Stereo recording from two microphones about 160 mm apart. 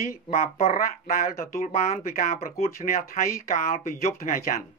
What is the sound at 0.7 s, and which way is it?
Speech, 65° left (ahead or behind).